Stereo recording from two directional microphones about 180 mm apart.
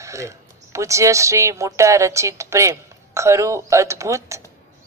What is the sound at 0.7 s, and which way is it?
A woman's voice, 15° right (ahead or behind).